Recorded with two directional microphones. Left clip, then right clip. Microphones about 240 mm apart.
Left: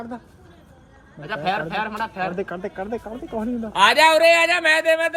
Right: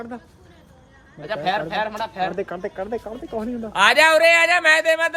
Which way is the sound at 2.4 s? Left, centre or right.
Left.